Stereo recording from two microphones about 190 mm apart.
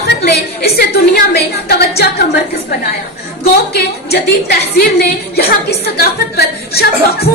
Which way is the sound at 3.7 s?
55° left (ahead or behind).